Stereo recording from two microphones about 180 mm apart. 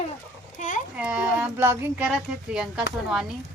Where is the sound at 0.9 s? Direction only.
10° right (ahead or behind).